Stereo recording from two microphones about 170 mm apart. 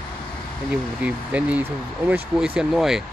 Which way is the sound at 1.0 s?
10° right (ahead or behind).